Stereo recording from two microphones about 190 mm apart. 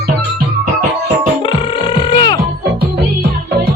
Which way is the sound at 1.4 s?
30° left (ahead or behind).